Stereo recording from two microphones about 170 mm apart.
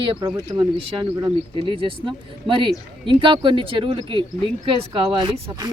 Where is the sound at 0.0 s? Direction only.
30° right (ahead or behind).